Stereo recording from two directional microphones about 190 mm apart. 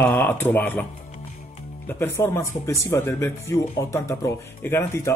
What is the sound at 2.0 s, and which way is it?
Speech, 15° left (ahead or behind).